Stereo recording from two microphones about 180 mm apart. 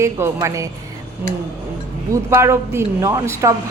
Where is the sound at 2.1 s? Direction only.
15° right (ahead or behind).